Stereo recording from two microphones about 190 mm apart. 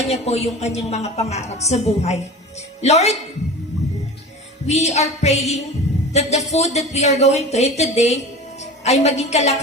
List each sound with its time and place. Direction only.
0.0 s a woman's voice: 35° left (ahead or behind)
4.6 s a woman's voice: 35° left (ahead or behind)